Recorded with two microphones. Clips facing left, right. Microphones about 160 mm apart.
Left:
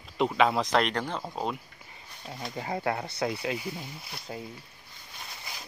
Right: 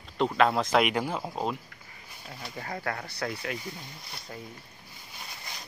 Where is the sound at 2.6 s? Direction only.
20° left (ahead or behind).